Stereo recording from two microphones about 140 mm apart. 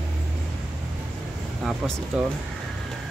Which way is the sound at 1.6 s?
Centre (ahead or behind).